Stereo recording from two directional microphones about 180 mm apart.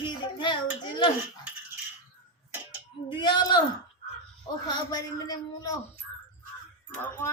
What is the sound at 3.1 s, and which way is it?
Speech, 25° left (ahead or behind).